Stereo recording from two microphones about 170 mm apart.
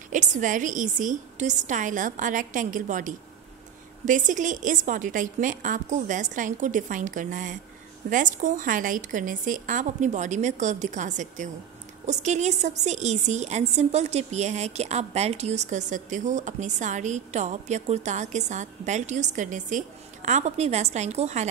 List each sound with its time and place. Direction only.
0.1 s a woman's voice: 45° right (ahead or behind)